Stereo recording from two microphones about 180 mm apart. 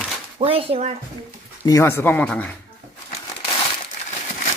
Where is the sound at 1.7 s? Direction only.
15° left (ahead or behind).